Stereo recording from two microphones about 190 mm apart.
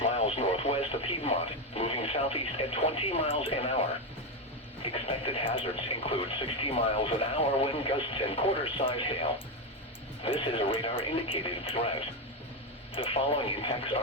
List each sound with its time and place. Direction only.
0.0 s radio: 30° left (ahead or behind)
1.7 s speech: 30° left (ahead or behind)
4.8 s speech: 30° left (ahead or behind)
10.2 s speech: 30° left (ahead or behind)